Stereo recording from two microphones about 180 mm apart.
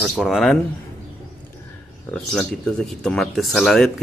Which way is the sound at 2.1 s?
5° left (ahead or behind).